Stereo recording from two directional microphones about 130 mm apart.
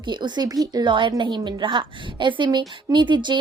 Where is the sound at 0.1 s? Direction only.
35° right (ahead or behind).